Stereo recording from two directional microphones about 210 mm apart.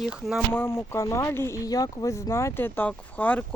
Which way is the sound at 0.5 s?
10° left (ahead or behind).